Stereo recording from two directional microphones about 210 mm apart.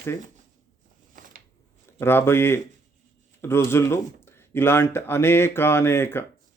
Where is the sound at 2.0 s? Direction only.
10° left (ahead or behind).